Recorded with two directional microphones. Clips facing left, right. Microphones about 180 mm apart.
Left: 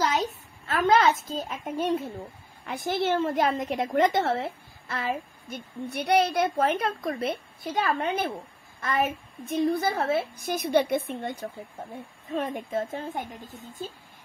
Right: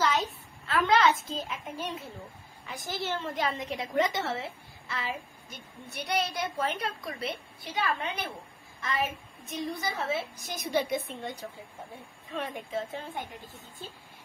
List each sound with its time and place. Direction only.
0.0 s a child's voice: 40° left (ahead or behind)
2.6 s a woman's voice: 60° left (ahead or behind)
3.3 s a woman's voice: 50° left (ahead or behind)